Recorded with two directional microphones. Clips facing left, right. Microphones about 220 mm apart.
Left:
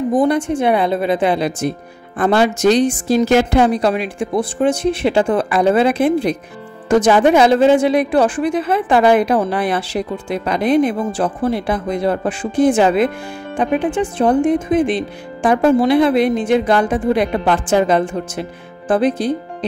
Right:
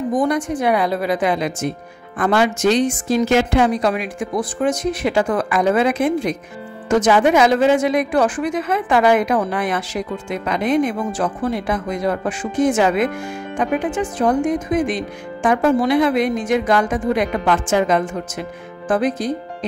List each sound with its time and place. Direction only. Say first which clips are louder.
0.2 s a woman's voice: left 3 dB; 30° left (ahead or behind)